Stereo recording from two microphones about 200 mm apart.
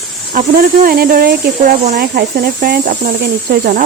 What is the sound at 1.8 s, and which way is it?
Speech, 35° right (ahead or behind).